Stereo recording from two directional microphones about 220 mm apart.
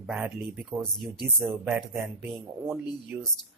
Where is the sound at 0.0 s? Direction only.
5° right (ahead or behind).